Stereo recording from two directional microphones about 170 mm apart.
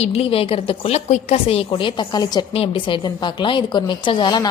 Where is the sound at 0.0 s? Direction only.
35° left (ahead or behind).